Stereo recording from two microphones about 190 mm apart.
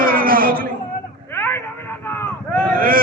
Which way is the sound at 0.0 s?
50° right (ahead or behind).